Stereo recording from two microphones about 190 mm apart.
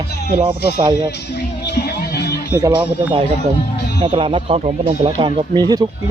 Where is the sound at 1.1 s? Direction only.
60° left (ahead or behind).